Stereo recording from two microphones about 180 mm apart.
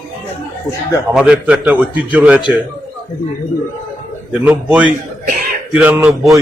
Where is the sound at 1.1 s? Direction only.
5° right (ahead or behind).